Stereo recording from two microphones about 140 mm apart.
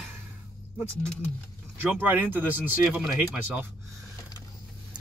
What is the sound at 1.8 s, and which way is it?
Speech, 15° right (ahead or behind).